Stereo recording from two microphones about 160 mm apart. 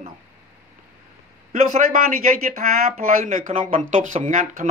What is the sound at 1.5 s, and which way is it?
Speech, 55° right (ahead or behind).